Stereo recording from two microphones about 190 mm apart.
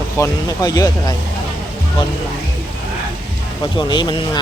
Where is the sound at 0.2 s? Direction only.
20° left (ahead or behind).